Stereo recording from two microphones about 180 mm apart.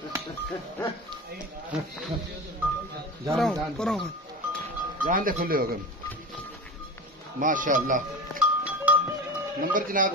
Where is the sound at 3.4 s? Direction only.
5° left (ahead or behind).